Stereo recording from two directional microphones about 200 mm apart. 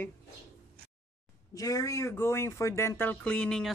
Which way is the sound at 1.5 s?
15° left (ahead or behind).